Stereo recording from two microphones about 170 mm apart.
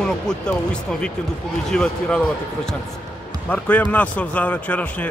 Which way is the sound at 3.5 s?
10° left (ahead or behind).